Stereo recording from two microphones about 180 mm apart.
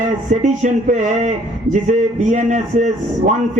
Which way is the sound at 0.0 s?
45° right (ahead or behind).